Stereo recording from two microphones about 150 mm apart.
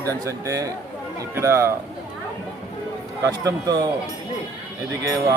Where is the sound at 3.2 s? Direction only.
20° right (ahead or behind).